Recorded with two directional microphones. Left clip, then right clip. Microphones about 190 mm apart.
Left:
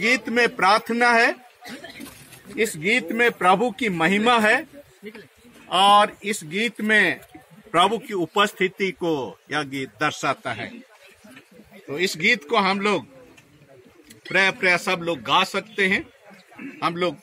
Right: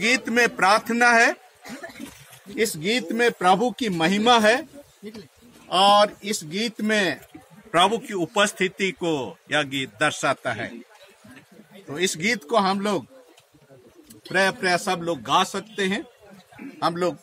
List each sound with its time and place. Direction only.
0.0 s a man's voice: 15° right (ahead or behind)
2.8 s a man's voice: 10° right (ahead or behind)
5.7 s a man's voice: 15° right (ahead or behind)
11.9 s a man's voice: centre (ahead or behind)
12.4 s a man's voice: 20° right (ahead or behind)
14.3 s a man's voice: 15° right (ahead or behind)